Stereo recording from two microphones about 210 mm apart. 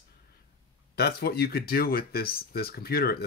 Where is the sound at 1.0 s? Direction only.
50° left (ahead or behind).